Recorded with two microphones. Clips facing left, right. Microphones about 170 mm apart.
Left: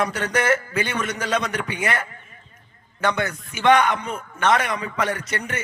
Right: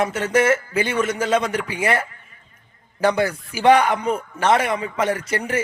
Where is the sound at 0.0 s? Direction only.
25° right (ahead or behind).